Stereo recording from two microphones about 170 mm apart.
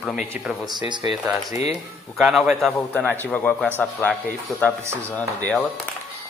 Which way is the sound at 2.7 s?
10° left (ahead or behind).